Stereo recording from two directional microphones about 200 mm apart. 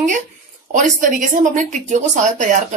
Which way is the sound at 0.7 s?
40° right (ahead or behind).